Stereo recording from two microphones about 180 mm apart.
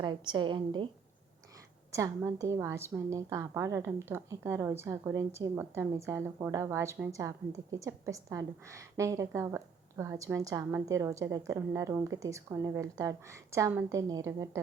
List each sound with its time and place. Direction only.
0.0 s a woman's voice: 25° right (ahead or behind)
1.9 s a woman's voice: 15° right (ahead or behind)